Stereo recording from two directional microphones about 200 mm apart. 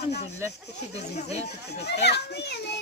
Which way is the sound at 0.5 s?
55° left (ahead or behind).